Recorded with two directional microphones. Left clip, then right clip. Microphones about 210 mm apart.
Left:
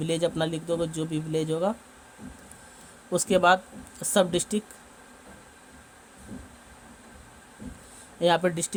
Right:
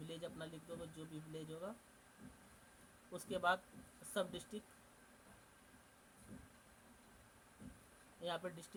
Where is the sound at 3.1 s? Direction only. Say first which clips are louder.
Left 18 dB; 50° left (ahead or behind).